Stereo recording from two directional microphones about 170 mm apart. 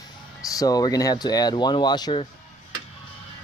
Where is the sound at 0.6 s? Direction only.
20° left (ahead or behind).